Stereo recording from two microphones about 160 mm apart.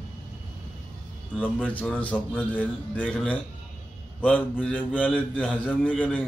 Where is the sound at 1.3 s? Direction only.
5° left (ahead or behind).